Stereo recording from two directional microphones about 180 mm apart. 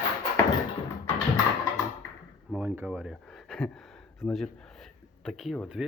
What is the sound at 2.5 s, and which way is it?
Speech, 10° right (ahead or behind).